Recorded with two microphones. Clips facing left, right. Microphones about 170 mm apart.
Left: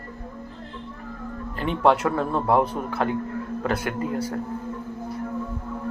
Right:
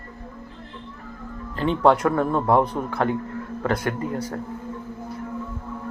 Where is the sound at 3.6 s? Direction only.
25° left (ahead or behind).